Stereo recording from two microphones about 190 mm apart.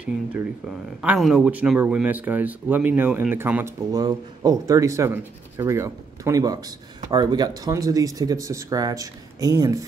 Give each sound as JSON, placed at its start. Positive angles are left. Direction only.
{"t": 0.0, "sound": "speech", "side_deg": -5}
{"t": 3.9, "sound": "speech", "side_deg": -20}